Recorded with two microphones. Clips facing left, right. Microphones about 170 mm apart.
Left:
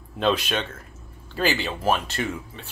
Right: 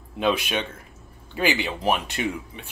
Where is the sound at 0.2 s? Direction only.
10° right (ahead or behind).